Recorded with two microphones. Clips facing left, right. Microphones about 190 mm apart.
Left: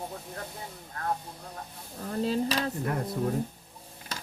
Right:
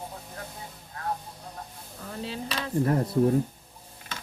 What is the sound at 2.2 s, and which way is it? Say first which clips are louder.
Speech: left 6 dB; 40° left (ahead or behind).